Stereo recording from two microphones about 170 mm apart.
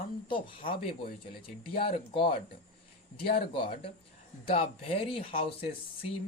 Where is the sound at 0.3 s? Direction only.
30° left (ahead or behind).